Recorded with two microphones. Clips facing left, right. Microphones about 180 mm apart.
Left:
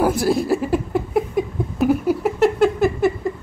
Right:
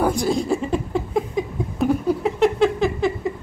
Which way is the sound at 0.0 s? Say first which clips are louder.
Left 2 dB; 5° left (ahead or behind).